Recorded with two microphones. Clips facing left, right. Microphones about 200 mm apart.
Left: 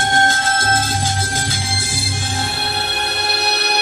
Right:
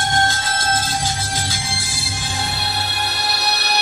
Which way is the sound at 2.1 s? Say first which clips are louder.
Even; 50° left (ahead or behind).